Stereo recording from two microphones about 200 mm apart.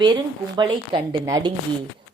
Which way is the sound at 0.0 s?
25° right (ahead or behind).